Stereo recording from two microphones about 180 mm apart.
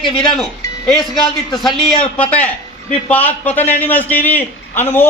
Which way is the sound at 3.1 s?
10° left (ahead or behind).